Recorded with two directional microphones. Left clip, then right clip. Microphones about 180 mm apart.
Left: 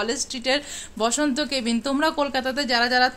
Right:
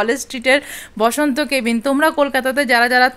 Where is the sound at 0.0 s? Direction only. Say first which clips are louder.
Right 8 dB; 35° right (ahead or behind).